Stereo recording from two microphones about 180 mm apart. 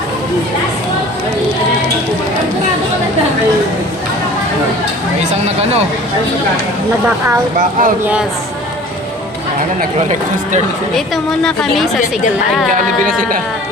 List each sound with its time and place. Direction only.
7.6 s speech: 50° right (ahead or behind)
10.9 s a woman's voice: centre (ahead or behind)